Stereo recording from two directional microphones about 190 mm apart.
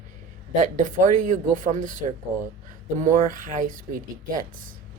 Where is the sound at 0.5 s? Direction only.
45° right (ahead or behind).